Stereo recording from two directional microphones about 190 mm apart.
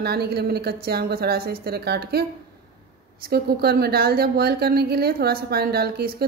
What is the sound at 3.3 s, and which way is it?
Speech, 55° right (ahead or behind).